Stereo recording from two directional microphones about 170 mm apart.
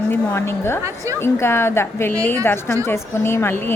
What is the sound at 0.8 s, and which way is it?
Speech, 20° right (ahead or behind).